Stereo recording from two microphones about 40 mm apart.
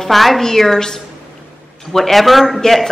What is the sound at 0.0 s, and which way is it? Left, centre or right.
A woman's voice, centre.